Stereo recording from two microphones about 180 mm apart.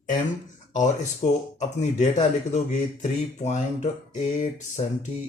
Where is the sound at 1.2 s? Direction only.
35° left (ahead or behind).